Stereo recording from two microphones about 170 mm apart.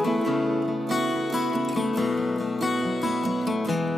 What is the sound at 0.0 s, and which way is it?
Music, centre (ahead or behind).